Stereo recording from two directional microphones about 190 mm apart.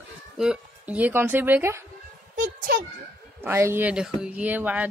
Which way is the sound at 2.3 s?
45° right (ahead or behind).